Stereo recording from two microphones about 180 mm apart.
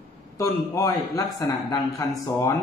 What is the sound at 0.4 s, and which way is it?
A man's voice, 20° left (ahead or behind).